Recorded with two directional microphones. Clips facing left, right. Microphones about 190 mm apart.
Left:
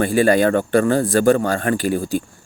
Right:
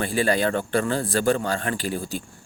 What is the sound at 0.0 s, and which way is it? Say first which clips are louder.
Speech: left 7 dB; 45° left (ahead or behind).